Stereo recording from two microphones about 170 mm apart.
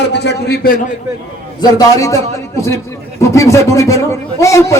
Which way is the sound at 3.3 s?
15° left (ahead or behind).